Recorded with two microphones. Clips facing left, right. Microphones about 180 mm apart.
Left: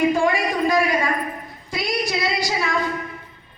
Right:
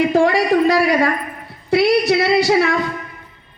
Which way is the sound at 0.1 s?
75° right (ahead or behind).